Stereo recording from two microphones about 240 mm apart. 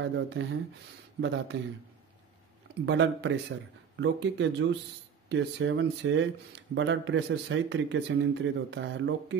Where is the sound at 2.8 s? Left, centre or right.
Right.